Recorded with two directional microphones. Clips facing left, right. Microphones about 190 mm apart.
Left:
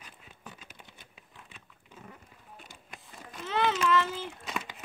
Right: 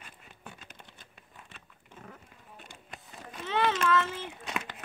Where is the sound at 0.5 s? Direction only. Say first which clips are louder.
Even; 10° left (ahead or behind).